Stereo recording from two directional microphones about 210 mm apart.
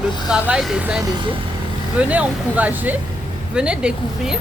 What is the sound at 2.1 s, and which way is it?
Speech, 5° right (ahead or behind).